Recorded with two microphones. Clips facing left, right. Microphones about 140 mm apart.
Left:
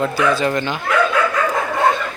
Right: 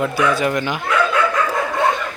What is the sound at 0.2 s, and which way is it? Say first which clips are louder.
Speech: even; 15° right (ahead or behind).